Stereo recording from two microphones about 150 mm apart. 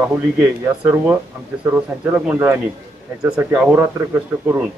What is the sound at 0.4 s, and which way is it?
Speech, 10° right (ahead or behind).